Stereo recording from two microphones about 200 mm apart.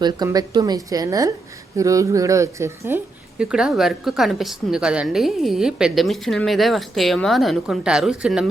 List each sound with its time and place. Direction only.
0.0 s a woman's voice: 20° right (ahead or behind); by 8.4 s centre (ahead or behind)